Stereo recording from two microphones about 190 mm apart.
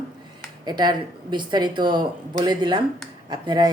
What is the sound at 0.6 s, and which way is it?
A woman's voice, 20° right (ahead or behind).